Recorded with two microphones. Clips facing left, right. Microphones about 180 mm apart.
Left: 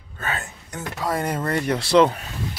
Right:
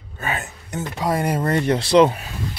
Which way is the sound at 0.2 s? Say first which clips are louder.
Right 2 dB; 15° right (ahead or behind).